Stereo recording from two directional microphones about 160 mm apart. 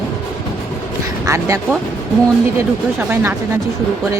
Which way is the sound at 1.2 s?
20° right (ahead or behind).